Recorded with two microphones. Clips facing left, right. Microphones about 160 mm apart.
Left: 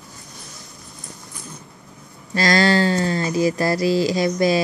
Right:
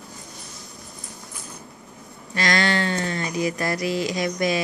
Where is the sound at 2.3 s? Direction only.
35° left (ahead or behind).